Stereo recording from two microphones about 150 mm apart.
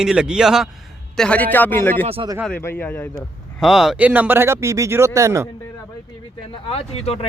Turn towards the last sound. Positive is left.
turn(degrees=40)  # may be behind; listen again after turning